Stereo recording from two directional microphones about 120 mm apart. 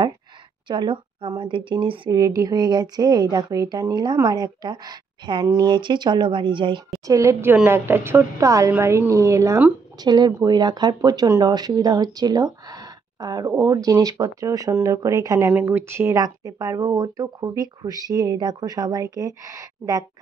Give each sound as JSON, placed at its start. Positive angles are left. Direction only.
{"t": 0.7, "sound": "a woman's voice", "side_deg": -40}
{"t": 2.0, "sound": "speech", "side_deg": -30}
{"t": 7.1, "sound": "a woman's voice", "side_deg": -25}
{"t": 9.9, "sound": "speech", "side_deg": -35}